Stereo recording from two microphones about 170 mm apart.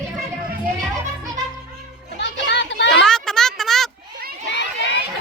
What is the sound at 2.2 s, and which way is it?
Children playing, 90° left.